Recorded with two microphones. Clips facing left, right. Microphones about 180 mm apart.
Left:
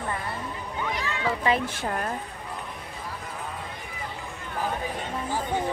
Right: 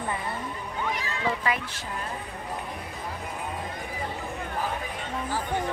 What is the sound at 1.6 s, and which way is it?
Speech, 55° left (ahead or behind).